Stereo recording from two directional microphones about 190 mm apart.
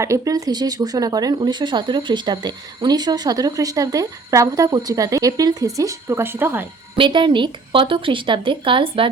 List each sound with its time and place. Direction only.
0.0 s speech: 15° right (ahead or behind)
6.9 s speech: 25° right (ahead or behind)